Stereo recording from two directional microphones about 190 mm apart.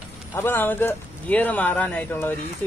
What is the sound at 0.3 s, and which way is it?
Speech, 10° left (ahead or behind).